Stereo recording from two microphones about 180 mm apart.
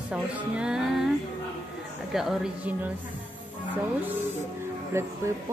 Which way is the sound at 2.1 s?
Centre (ahead or behind).